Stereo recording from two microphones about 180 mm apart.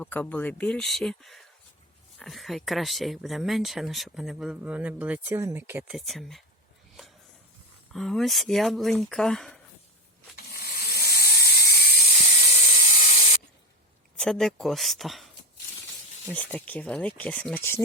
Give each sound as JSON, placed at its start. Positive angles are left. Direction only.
{"t": 0.0, "sound": "speech", "side_deg": 10}
{"t": 6.0, "sound": "speech", "side_deg": 0}
{"t": 7.9, "sound": "speech", "side_deg": 0}
{"t": 10.3, "sound": "a sound", "side_deg": 60}
{"t": 12.1, "sound": "spray", "side_deg": 40}
{"t": 14.2, "sound": "speech", "side_deg": 0}